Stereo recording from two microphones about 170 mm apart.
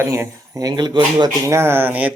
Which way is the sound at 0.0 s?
15° right (ahead or behind).